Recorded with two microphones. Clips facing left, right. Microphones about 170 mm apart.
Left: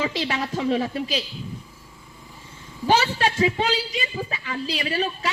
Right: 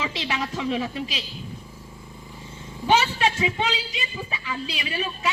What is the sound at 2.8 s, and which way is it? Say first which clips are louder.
Speech: left 1 dB; 35° left (ahead or behind).